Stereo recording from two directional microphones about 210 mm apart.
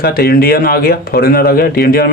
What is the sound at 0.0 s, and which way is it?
Speech, 45° left (ahead or behind).